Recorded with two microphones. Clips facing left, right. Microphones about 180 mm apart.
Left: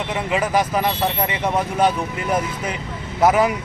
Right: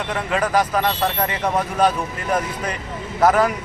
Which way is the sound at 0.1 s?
10° left (ahead or behind).